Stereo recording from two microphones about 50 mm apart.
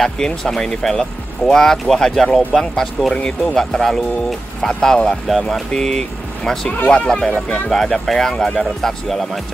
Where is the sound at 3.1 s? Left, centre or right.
Left.